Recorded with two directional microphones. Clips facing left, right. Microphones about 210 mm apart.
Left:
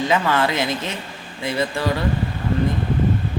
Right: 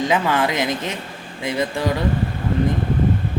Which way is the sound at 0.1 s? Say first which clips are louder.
Even; 15° right (ahead or behind).